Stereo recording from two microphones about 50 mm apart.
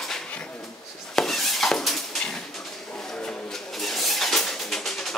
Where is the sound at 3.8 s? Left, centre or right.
Centre.